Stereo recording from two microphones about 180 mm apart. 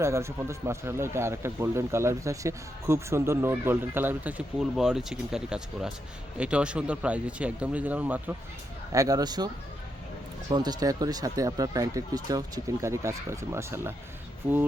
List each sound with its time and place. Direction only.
0.0 s speech: 15° right (ahead or behind)
10.5 s speech: 20° right (ahead or behind)